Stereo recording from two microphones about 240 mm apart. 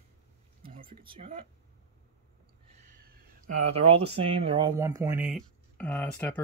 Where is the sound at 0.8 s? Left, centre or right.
Right.